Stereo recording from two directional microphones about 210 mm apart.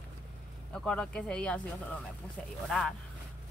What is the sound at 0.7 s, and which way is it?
Speech, 5° left (ahead or behind).